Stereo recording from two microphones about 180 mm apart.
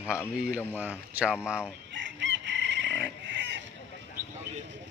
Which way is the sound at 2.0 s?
90° right.